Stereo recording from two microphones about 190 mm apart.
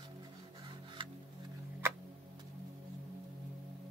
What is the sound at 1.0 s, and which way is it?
Music, 25° right (ahead or behind).